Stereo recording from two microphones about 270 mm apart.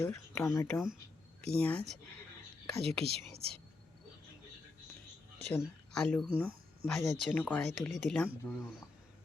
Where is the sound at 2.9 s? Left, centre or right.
Right.